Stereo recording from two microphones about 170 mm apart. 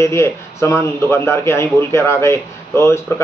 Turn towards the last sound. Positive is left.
turn(degrees=15)  # may be behind; listen again after turning